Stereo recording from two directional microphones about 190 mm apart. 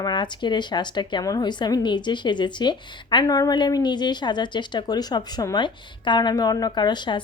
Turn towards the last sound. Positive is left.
turn(degrees=25)  # may be behind; listen again after turning